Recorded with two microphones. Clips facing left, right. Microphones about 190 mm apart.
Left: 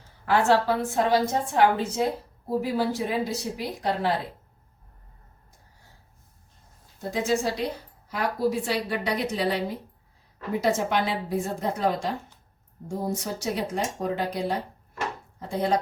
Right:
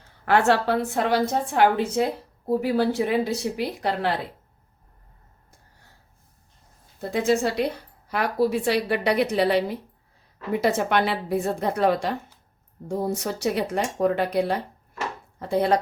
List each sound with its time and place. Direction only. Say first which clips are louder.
0.3 s a woman's voice: right 1 dB; 65° right (ahead or behind)
7.1 s a woman's voice: right 3 dB; 60° right (ahead or behind)
13.1 s a woman's voice: right 4 dB; 65° right (ahead or behind)